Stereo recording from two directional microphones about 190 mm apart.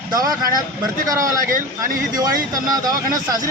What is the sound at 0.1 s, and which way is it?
Speech, 20° right (ahead or behind).